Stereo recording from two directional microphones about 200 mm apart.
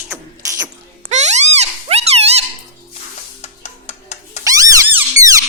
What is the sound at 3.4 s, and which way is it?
Cat, 35° left (ahead or behind).